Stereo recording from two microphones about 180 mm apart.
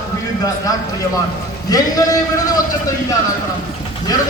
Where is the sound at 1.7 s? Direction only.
20° left (ahead or behind).